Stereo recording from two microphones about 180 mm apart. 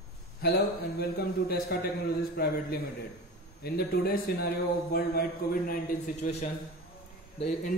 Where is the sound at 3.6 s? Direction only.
60° left (ahead or behind).